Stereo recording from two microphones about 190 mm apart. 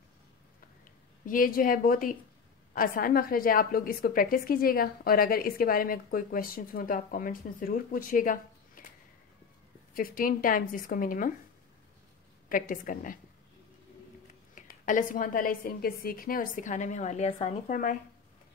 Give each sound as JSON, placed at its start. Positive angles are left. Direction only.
{"t": 1.2, "sound": "a woman's voice", "side_deg": 45}
{"t": 9.9, "sound": "a woman's voice", "side_deg": 50}
{"t": 12.4, "sound": "a woman's voice", "side_deg": 45}
{"t": 14.5, "sound": "a woman's voice", "side_deg": 45}